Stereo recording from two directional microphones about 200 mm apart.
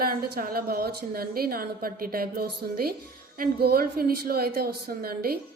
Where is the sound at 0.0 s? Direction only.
50° right (ahead or behind).